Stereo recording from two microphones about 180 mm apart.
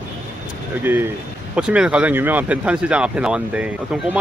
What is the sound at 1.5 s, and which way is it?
Speech, 5° right (ahead or behind).